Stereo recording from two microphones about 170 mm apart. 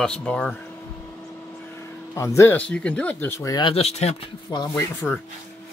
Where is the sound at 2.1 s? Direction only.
15° left (ahead or behind); by 4.2 s 40° left (ahead or behind).